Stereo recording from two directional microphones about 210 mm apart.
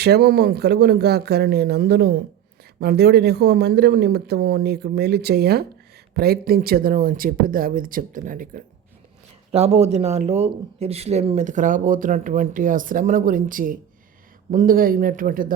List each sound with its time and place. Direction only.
0.0 s speech: 50° right (ahead or behind)
9.5 s speech: 30° right (ahead or behind)